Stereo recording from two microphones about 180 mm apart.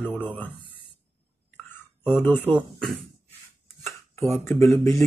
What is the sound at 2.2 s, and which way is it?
Speech, 10° left (ahead or behind).